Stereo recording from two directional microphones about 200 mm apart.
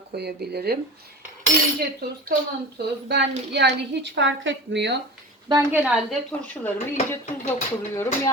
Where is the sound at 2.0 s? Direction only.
55° right (ahead or behind).